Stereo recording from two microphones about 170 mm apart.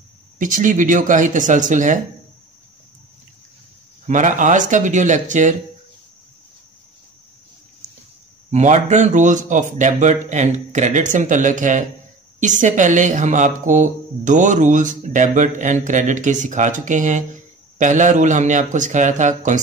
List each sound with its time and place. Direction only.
0.4 s speech: 50° right (ahead or behind)
4.1 s speech: 50° right (ahead or behind)
8.5 s speech: 45° right (ahead or behind)